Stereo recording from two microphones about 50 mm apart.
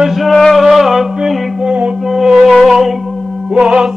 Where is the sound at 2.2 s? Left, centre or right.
Centre.